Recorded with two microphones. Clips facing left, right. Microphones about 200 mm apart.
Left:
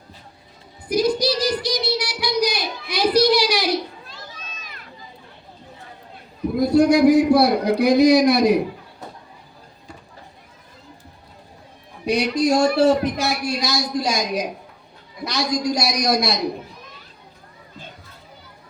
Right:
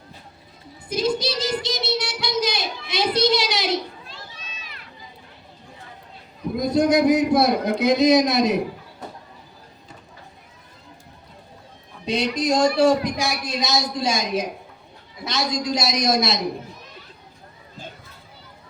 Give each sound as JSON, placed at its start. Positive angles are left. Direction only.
{"t": 0.9, "sound": "child singing", "side_deg": -25}
{"t": 6.6, "sound": "a man's voice", "side_deg": -20}
{"t": 12.0, "sound": "a man's voice", "side_deg": -20}